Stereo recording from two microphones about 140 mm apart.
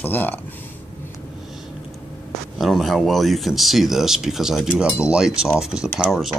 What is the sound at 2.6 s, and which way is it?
Speech, centre (ahead or behind).